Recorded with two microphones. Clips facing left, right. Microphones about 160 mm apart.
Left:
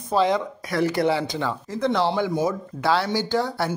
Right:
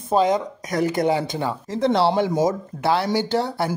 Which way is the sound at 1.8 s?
35° right (ahead or behind).